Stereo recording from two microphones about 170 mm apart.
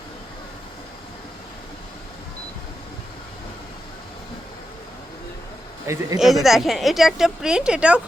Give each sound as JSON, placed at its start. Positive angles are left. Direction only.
{"t": 5.8, "sound": "a man's voice", "side_deg": -15}
{"t": 6.1, "sound": "a woman's voice", "side_deg": 0}